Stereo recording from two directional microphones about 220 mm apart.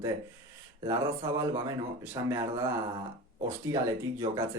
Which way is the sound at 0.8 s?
15° right (ahead or behind).